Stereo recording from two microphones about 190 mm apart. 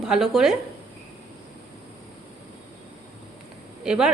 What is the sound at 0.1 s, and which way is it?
Speech, centre (ahead or behind).